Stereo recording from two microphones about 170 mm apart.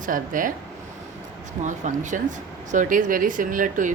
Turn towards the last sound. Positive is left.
turn(degrees=-50)  # may be behind; listen again after turning